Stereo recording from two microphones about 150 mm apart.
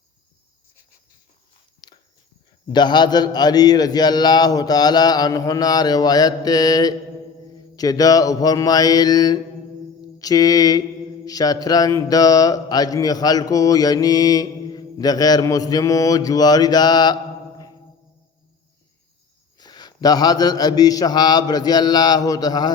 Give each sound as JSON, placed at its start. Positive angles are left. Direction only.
{"t": 1.8, "sound": "walk", "side_deg": 30}
{"t": 2.7, "sound": "mantra", "side_deg": 30}
{"t": 19.5, "sound": "mantra", "side_deg": 25}